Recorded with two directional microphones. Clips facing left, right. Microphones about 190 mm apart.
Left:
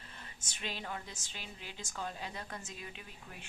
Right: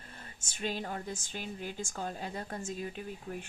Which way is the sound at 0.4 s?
45° right (ahead or behind).